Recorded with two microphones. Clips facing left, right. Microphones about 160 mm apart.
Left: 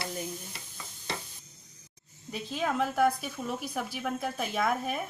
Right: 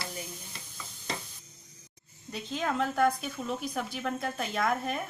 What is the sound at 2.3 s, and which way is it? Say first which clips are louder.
A woman's voice: left 1 dB; 5° left (ahead or behind).